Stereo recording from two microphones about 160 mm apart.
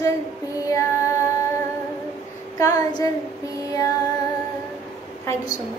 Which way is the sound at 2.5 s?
20° left (ahead or behind).